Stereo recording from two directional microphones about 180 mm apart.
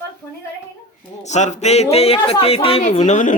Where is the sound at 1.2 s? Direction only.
40° left (ahead or behind).